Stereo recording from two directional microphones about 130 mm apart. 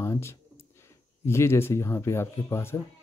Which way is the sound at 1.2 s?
20° left (ahead or behind).